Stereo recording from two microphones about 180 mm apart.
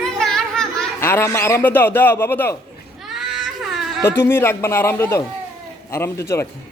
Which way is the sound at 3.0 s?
Centre (ahead or behind).